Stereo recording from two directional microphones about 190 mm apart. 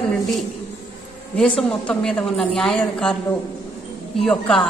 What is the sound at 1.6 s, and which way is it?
A woman's voice, 5° left (ahead or behind).